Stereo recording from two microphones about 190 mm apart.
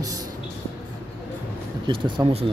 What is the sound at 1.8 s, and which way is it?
Speech, 25° right (ahead or behind).